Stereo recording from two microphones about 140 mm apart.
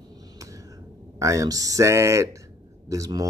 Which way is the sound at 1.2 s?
25° right (ahead or behind).